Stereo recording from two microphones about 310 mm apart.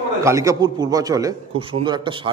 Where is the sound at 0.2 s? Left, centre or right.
Centre.